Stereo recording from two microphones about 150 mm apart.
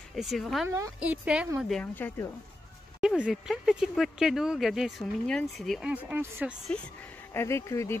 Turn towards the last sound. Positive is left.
turn(degrees=20)  # may be behind; listen again after turning